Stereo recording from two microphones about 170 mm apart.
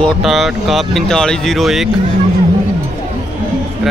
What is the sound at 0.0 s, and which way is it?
Speech, centre (ahead or behind).